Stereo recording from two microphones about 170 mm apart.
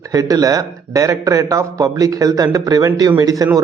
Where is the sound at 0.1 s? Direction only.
20° right (ahead or behind).